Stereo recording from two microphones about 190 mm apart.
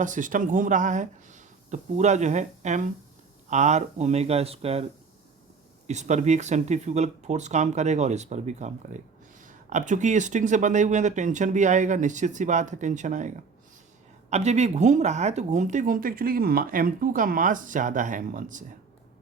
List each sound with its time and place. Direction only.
0.0 s speech: 45° right (ahead or behind)
5.9 s speech: 35° right (ahead or behind)